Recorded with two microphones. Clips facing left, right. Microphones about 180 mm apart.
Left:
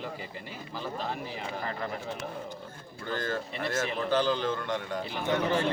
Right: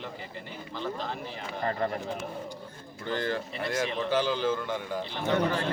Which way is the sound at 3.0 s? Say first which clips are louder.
Right 2 dB; 20° right (ahead or behind).